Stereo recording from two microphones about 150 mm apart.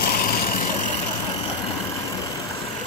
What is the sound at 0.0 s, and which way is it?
Vehicle, 75° left (ahead or behind).